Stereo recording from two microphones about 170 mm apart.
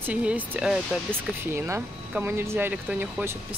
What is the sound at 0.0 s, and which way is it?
Speech, 10° right (ahead or behind).